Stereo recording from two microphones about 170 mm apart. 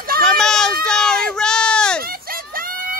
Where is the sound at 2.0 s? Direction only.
60° right (ahead or behind).